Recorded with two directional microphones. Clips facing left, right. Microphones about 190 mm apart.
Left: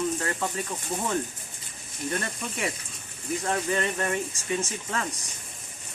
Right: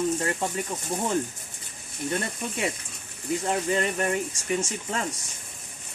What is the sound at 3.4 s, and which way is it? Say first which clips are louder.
Speech: right 1 dB; 20° right (ahead or behind).